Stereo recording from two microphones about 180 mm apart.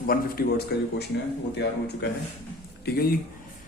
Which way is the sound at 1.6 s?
75° left (ahead or behind).